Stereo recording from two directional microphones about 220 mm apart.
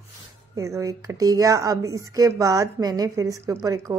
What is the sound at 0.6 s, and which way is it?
Speech, 15° right (ahead or behind).